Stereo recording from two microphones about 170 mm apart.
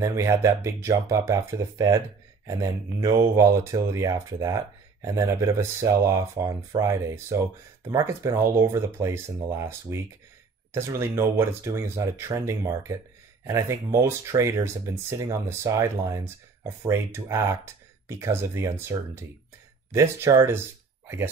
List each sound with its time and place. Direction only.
0.0 s speech: 15° right (ahead or behind)